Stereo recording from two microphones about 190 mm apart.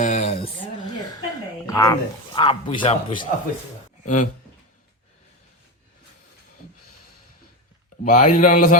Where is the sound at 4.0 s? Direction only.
40° left (ahead or behind).